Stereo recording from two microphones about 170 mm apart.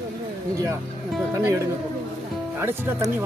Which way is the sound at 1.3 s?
20° right (ahead or behind).